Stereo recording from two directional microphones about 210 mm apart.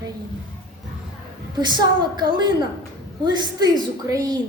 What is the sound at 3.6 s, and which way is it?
Speech, 15° right (ahead or behind).